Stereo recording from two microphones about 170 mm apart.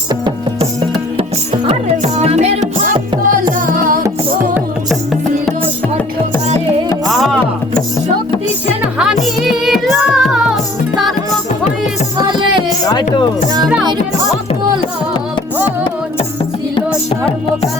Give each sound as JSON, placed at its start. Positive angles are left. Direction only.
{"t": 0.1, "sound": "music", "side_deg": -25}
{"t": 2.1, "sound": "music", "side_deg": -40}
{"t": 2.8, "sound": "music", "side_deg": -55}
{"t": 7.1, "sound": "music", "side_deg": 0}
{"t": 9.2, "sound": "music", "side_deg": 0}
{"t": 12.1, "sound": "music", "side_deg": -25}
{"t": 12.8, "sound": "music", "side_deg": 20}